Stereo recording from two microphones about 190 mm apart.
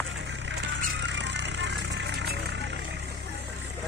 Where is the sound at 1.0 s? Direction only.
65° right (ahead or behind).